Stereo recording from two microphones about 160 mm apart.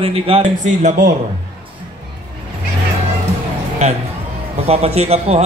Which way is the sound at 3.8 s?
45° right (ahead or behind).